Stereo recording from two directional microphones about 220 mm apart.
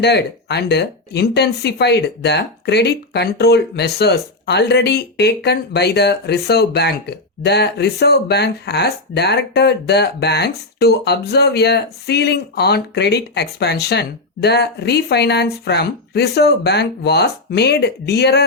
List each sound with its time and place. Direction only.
0.0 s speech: 50° left (ahead or behind)